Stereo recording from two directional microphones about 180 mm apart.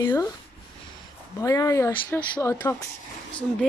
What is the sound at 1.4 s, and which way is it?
Speech, 20° left (ahead or behind).